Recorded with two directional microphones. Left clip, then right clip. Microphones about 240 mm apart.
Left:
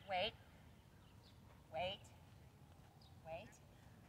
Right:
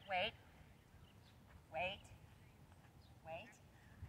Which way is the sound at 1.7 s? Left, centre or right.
Centre.